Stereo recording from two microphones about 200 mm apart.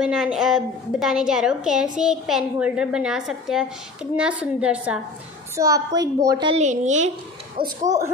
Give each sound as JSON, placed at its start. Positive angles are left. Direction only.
{"t": 0.0, "sound": "a woman's voice", "side_deg": -5}
{"t": 5.6, "sound": "a woman's voice", "side_deg": -15}
{"t": 6.5, "sound": "a woman's voice", "side_deg": -35}